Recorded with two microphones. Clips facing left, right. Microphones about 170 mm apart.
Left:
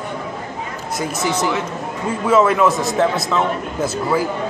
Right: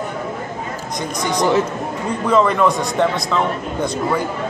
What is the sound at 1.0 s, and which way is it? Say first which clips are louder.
A man's voice: right 1 dB; 5° left (ahead or behind).